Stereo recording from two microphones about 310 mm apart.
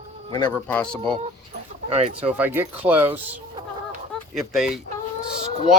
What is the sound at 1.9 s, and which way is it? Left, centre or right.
Speech, centre.